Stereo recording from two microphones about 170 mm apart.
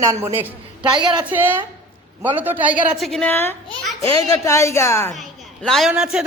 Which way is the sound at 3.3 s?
15° left (ahead or behind).